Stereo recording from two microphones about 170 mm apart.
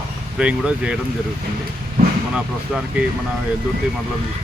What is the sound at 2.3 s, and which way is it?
Speech, 5° right (ahead or behind).